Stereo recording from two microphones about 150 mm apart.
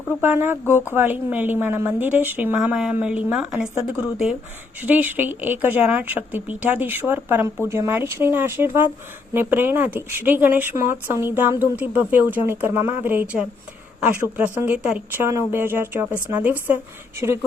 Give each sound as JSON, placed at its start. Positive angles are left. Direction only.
{"t": 0.2, "sound": "speech", "side_deg": -15}
{"t": 4.8, "sound": "speech", "side_deg": -10}